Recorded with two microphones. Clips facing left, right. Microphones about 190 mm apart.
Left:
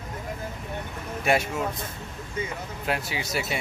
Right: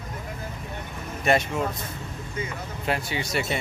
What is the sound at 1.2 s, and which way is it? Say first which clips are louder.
Speech: right 2 dB; 5° left (ahead or behind).